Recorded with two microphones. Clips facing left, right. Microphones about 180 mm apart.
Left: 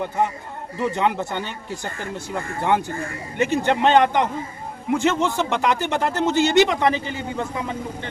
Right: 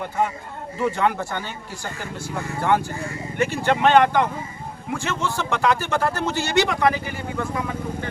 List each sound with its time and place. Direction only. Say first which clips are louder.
0.8 s speech: even; 20° left (ahead or behind)